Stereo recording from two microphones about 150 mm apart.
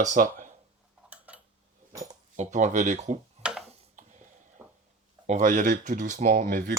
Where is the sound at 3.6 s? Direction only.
55° right (ahead or behind).